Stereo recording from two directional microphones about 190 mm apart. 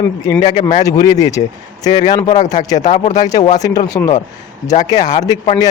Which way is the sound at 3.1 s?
20° left (ahead or behind).